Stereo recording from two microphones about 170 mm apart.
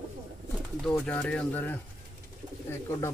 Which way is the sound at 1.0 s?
5° left (ahead or behind).